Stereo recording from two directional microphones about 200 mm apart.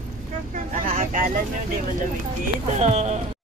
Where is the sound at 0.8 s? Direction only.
40° right (ahead or behind).